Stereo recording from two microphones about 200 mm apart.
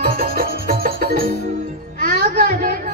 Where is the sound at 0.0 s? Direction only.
50° right (ahead or behind).